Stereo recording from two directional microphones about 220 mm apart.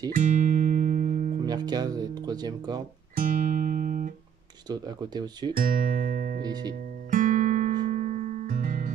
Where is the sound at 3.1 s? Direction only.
35° right (ahead or behind).